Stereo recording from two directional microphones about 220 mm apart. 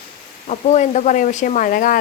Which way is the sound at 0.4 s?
35° left (ahead or behind).